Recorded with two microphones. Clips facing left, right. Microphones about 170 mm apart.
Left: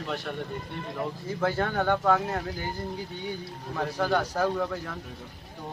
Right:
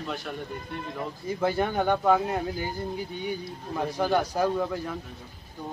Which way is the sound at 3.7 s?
15° right (ahead or behind).